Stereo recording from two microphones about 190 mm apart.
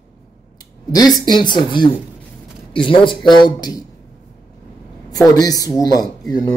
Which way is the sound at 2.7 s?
25° left (ahead or behind).